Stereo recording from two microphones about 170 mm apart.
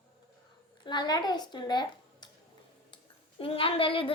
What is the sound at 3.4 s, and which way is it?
Speech, 30° left (ahead or behind).